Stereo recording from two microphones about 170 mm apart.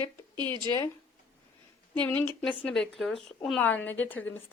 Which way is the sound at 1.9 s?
10° left (ahead or behind).